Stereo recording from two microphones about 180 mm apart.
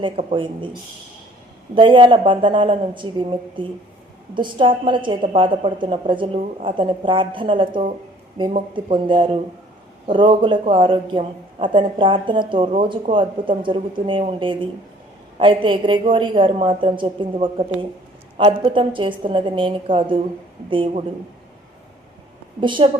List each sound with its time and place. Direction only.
0.0 s a woman's voice: 30° right (ahead or behind)
1.7 s a woman's voice: 30° right (ahead or behind)
22.6 s a woman's voice: 25° right (ahead or behind)